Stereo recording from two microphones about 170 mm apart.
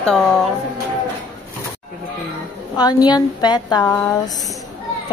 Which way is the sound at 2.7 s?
25° left (ahead or behind).